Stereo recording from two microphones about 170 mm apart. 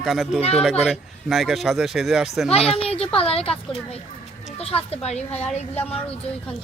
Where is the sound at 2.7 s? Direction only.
35° left (ahead or behind).